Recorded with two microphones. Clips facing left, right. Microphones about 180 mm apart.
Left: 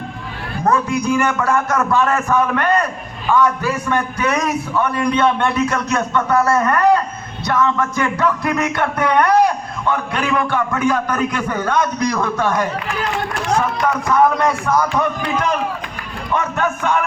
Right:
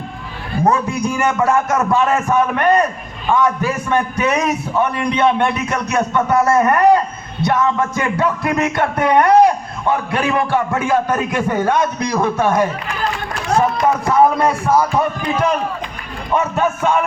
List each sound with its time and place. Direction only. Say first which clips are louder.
0.6 s a man's voice: right 1 dB; 25° right (ahead or behind)